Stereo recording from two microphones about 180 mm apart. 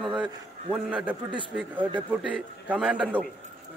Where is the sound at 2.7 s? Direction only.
5° right (ahead or behind).